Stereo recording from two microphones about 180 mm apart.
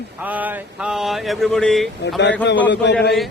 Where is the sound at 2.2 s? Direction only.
80° left.